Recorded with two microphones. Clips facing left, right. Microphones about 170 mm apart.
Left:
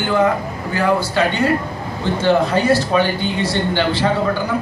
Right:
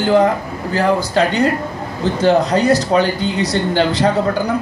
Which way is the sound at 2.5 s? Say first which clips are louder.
Right 2 dB; 40° right (ahead or behind).